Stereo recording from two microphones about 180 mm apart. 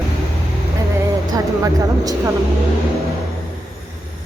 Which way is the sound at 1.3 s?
20° right (ahead or behind).